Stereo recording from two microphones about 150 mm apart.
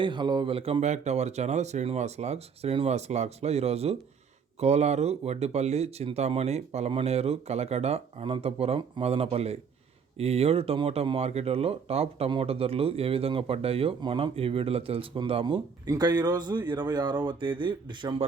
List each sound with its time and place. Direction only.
0.0 s speech: 30° right (ahead or behind)